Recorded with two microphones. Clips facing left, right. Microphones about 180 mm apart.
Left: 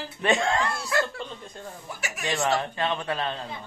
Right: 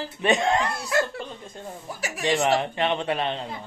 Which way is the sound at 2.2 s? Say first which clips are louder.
Right 4 dB; 20° right (ahead or behind).